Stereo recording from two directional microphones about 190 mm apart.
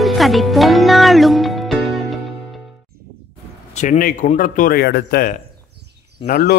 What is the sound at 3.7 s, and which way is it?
Speech, 40° left (ahead or behind).